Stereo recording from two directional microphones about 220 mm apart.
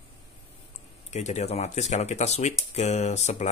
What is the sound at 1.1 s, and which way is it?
Speech, 30° left (ahead or behind).